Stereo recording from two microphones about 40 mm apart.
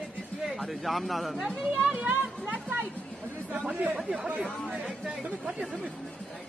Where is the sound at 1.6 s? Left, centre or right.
Right.